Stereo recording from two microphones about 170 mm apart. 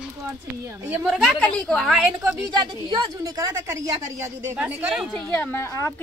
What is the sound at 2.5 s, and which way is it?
Speech, 25° right (ahead or behind).